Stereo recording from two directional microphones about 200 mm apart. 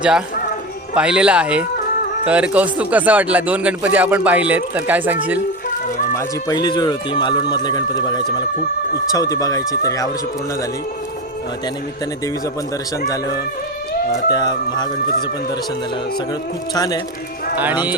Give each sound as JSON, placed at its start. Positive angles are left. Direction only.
{"t": 0.9, "sound": "a man's voice", "side_deg": -5}
{"t": 6.1, "sound": "speech", "side_deg": 20}
{"t": 13.1, "sound": "speech", "side_deg": 20}
{"t": 16.7, "sound": "speech", "side_deg": 20}